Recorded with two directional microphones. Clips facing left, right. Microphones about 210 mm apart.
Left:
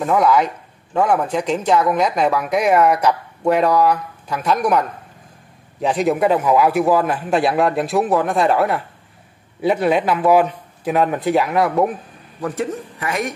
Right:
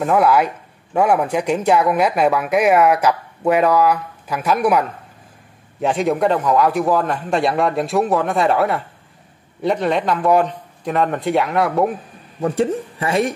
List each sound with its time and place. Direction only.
0.0 s speech: 5° right (ahead or behind)
12.4 s speech: 30° right (ahead or behind)